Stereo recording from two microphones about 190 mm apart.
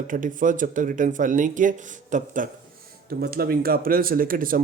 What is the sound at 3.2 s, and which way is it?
Speech, 55° right (ahead or behind).